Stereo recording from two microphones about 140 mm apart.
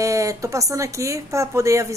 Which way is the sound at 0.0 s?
20° right (ahead or behind).